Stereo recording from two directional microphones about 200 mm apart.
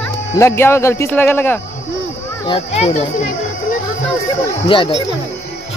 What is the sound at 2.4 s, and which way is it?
Speech, 30° left (ahead or behind).